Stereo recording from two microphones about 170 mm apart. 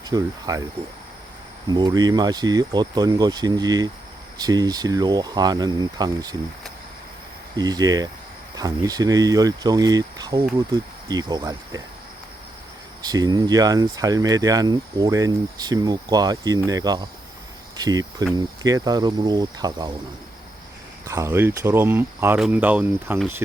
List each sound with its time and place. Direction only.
0.1 s speech: 20° right (ahead or behind)
1.6 s speech: 25° right (ahead or behind)
7.5 s speech: 20° right (ahead or behind)
13.0 s speech: 25° right (ahead or behind)
21.1 s speech: 15° right (ahead or behind)